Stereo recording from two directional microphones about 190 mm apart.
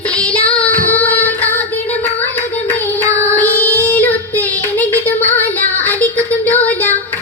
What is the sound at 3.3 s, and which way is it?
Child singing, 10° left (ahead or behind).